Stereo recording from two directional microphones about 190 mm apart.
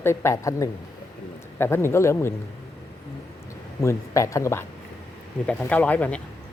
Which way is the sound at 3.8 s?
15° left (ahead or behind).